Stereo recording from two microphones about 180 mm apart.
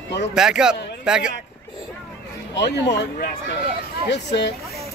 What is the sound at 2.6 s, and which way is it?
Speech, 75° left (ahead or behind).